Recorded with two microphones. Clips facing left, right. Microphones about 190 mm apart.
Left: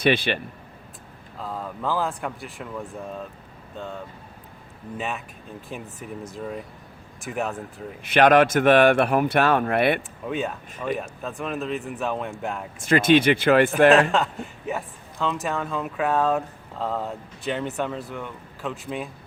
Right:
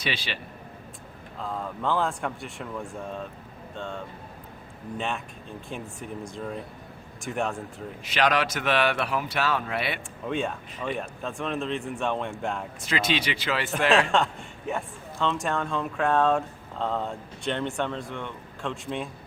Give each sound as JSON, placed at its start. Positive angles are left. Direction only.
{"t": 0.0, "sound": "speech", "side_deg": 55}
{"t": 1.4, "sound": "speech", "side_deg": 5}
{"t": 8.0, "sound": "a man's voice", "side_deg": 55}
{"t": 10.2, "sound": "speech", "side_deg": 0}
{"t": 12.8, "sound": "a man's voice", "side_deg": 50}
{"t": 14.1, "sound": "speech", "side_deg": 0}